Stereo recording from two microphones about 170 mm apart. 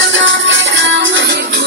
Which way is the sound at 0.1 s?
90° right.